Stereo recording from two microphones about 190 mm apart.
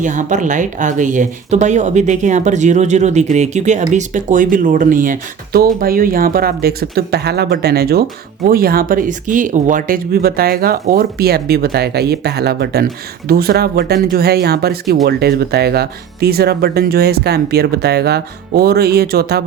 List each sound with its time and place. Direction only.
0.0 s speech: 40° right (ahead or behind); by 19.4 s 55° right (ahead or behind)